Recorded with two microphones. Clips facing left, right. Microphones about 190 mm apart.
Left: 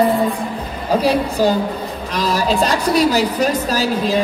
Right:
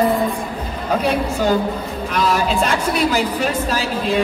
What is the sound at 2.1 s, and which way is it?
A woman's voice, 35° left (ahead or behind).